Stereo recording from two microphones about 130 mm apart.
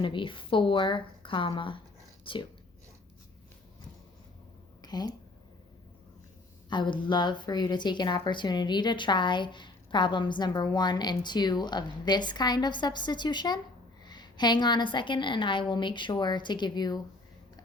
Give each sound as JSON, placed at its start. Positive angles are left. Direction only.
{"t": 0.0, "sound": "speech", "side_deg": 40}
{"t": 4.8, "sound": "a sound", "side_deg": 30}
{"t": 6.7, "sound": "speech", "side_deg": 35}